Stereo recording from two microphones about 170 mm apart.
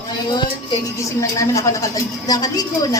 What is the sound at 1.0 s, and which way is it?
A woman's voice, 20° left (ahead or behind).